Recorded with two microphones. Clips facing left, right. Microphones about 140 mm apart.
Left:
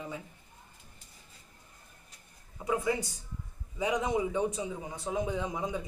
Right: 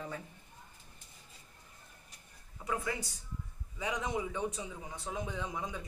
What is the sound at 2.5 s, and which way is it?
A man's voice, 15° left (ahead or behind).